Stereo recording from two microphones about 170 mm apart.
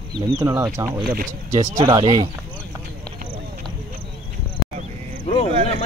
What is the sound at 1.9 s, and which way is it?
Speech, 25° right (ahead or behind).